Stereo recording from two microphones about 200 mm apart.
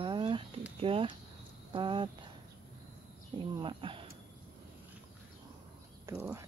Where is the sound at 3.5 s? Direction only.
25° right (ahead or behind).